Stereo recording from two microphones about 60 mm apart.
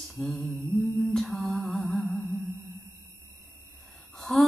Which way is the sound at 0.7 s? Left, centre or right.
Left.